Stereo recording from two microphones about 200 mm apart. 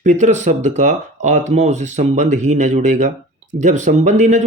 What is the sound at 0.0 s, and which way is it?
Speech, 35° right (ahead or behind).